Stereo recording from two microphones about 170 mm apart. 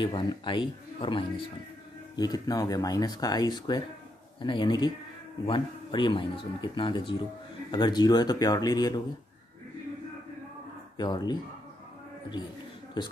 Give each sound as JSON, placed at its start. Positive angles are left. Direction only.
{"t": 0.0, "sound": "speech", "side_deg": 30}
{"t": 11.0, "sound": "speech", "side_deg": 25}
{"t": 13.0, "sound": "speech", "side_deg": 25}